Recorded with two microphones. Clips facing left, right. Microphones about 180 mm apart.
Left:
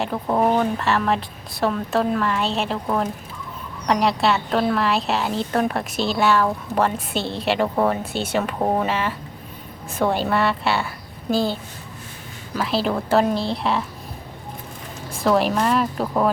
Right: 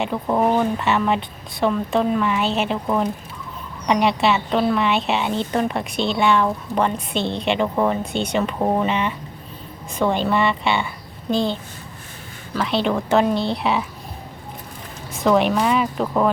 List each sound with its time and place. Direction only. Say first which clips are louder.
0.0 s a woman's voice: right 1 dB; centre (ahead or behind)
12.5 s a woman's voice: right 1 dB; centre (ahead or behind)
15.1 s a woman's voice: right 2 dB; centre (ahead or behind)